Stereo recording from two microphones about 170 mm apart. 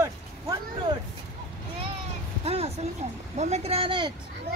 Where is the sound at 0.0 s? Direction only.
20° right (ahead or behind).